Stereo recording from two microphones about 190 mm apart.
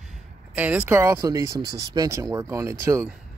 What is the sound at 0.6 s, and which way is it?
Speech, 10° right (ahead or behind).